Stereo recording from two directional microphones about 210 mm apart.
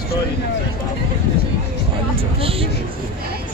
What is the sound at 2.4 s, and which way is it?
Speech, 25° right (ahead or behind).